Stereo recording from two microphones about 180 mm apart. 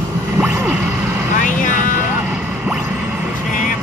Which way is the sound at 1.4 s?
45° left (ahead or behind).